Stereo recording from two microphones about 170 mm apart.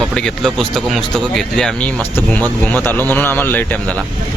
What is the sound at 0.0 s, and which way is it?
Speech, 5° left (ahead or behind).